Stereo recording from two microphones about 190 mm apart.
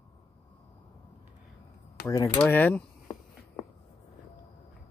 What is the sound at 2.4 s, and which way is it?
Speech, 10° left (ahead or behind).